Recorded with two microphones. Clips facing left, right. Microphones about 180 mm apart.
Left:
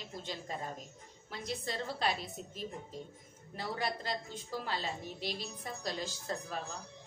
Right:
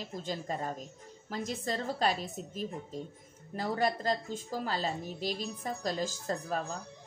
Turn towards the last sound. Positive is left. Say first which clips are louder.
# right 5 dB
turn(degrees=-45)  # may be behind; listen again after turning